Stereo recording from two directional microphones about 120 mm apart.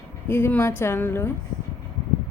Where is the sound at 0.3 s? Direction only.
20° left (ahead or behind).